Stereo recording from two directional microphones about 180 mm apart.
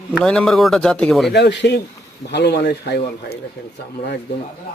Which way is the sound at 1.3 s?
70° left (ahead or behind).